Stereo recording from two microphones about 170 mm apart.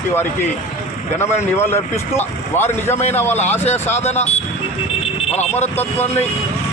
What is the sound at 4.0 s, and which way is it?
Speech, 40° left (ahead or behind).